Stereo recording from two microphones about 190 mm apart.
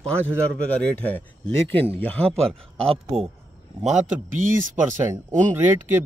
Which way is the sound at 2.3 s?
30° right (ahead or behind).